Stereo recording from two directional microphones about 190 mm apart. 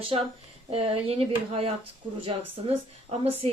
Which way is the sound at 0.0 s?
30° right (ahead or behind).